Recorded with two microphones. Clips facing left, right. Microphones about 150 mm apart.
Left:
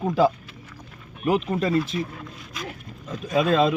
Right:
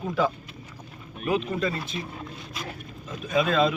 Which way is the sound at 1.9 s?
25° right (ahead or behind).